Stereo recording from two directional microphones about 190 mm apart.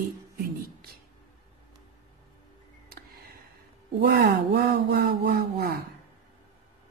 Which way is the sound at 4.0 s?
55° right (ahead or behind).